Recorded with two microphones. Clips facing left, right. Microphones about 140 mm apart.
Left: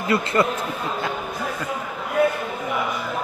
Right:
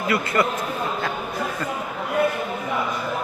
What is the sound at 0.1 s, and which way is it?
Speech, 25° left (ahead or behind).